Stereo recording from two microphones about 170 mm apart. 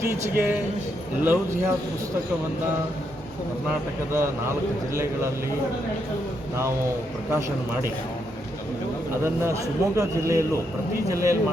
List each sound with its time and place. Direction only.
0.1 s a man's voice: 15° right (ahead or behind)
4.1 s a man's voice: 15° right (ahead or behind)
9.2 s a man's voice: 15° right (ahead or behind)